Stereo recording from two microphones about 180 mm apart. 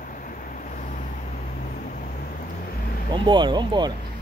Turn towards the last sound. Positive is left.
turn(degrees=-25)  # may be behind; listen again after turning